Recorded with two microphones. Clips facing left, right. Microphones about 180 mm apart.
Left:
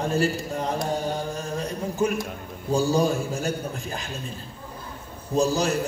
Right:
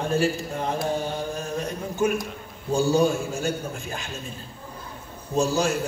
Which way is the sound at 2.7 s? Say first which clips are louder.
Right 1 dB; 35° left (ahead or behind).